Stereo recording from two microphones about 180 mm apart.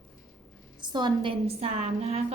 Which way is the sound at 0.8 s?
25° right (ahead or behind).